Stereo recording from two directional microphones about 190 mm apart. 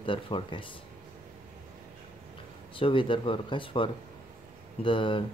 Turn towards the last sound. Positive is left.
turn(degrees=25)  # may be behind; listen again after turning